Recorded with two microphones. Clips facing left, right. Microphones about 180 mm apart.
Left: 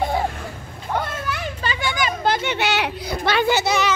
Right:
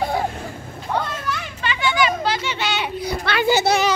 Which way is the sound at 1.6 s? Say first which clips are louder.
Right 6 dB; 40° left (ahead or behind).